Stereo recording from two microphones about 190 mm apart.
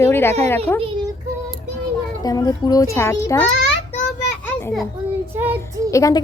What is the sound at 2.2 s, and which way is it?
Speech, 20° left (ahead or behind).